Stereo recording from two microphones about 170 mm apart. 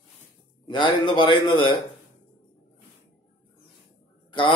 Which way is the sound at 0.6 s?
30° left (ahead or behind).